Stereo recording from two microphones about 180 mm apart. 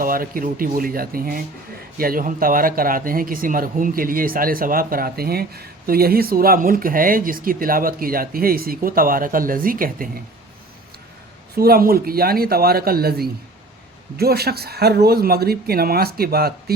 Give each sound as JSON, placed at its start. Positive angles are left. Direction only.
{"t": 0.0, "sound": "speech", "side_deg": -50}
{"t": 11.5, "sound": "speech", "side_deg": -55}